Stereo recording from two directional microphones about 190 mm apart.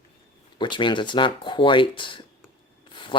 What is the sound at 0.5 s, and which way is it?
Speech, 25° left (ahead or behind).